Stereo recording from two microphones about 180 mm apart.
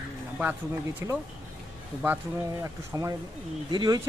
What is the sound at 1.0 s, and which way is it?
Speech, 15° right (ahead or behind).